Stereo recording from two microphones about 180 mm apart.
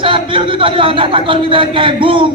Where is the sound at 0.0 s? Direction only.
30° right (ahead or behind).